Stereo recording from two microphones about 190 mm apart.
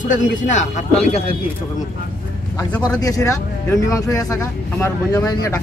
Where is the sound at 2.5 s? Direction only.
15° left (ahead or behind).